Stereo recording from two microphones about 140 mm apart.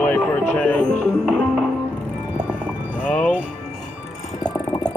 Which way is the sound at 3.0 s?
10° left (ahead or behind).